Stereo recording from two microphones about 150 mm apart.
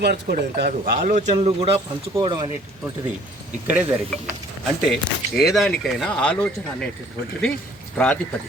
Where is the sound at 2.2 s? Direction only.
30° right (ahead or behind).